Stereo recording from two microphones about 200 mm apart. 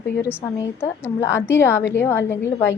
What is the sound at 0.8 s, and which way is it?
A woman's voice, 10° left (ahead or behind).